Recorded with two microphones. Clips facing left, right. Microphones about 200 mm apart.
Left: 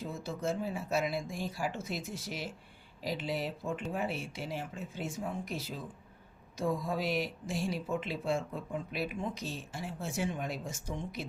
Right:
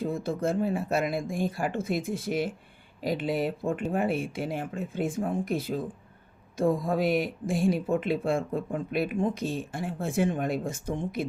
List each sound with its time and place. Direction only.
0.0 s speech: 55° right (ahead or behind)